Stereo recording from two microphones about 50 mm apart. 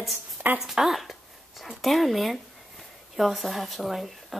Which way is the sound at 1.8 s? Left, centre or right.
Centre.